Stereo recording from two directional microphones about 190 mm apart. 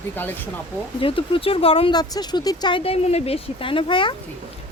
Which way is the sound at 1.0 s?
30° left (ahead or behind).